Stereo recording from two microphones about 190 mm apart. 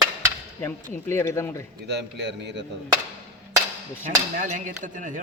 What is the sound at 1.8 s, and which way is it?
Speech, 65° right (ahead or behind).